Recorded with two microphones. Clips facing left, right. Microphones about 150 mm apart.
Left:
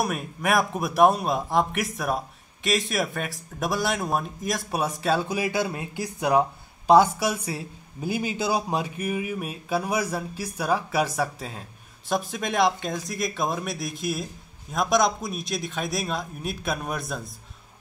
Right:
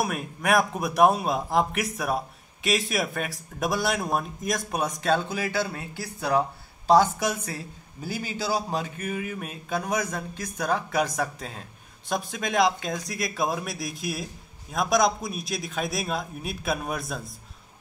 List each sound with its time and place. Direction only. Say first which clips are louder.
0.0 s speech: left 1 dB; centre (ahead or behind)
5.3 s speech: left 2 dB; 15° left (ahead or behind); by 17.3 s centre (ahead or behind)